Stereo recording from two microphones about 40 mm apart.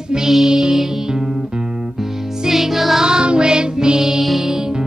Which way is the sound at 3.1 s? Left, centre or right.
Right.